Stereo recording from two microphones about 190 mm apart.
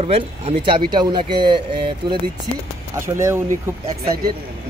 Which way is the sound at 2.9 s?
15° right (ahead or behind).